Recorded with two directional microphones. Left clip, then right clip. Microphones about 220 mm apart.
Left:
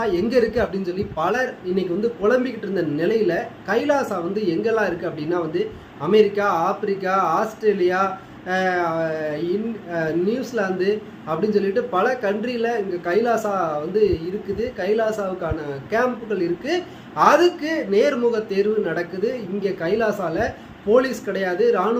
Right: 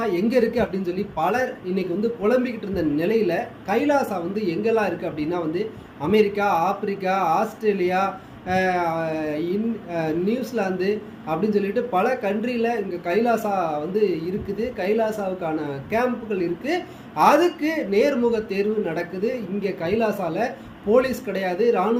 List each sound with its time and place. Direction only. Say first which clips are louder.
0.0 s speech: left 2 dB; 10° left (ahead or behind)